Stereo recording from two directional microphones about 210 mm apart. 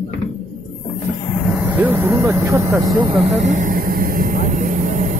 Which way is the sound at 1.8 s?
10° right (ahead or behind).